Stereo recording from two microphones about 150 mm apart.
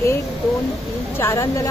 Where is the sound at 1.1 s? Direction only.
15° left (ahead or behind).